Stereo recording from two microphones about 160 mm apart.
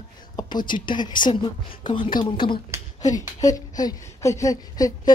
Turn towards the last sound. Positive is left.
turn(degrees=20)  # may be behind; listen again after turning